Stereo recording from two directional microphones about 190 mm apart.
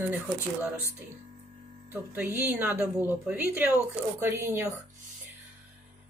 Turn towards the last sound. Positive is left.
turn(degrees=-15)  # may be behind; listen again after turning